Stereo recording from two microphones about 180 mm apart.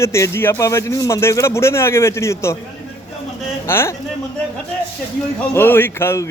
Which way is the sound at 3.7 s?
15° left (ahead or behind).